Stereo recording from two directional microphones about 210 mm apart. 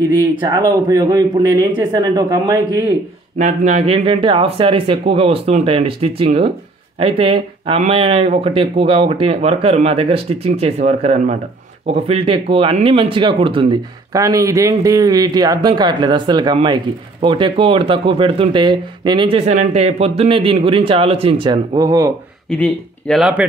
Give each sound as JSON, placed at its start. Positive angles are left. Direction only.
{"t": 0.4, "sound": "speech", "side_deg": -20}
{"t": 3.3, "sound": "speech", "side_deg": -35}
{"t": 22.5, "sound": "speech", "side_deg": 5}